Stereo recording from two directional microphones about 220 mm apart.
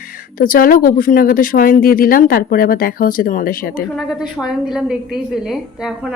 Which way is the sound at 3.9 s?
Centre (ahead or behind).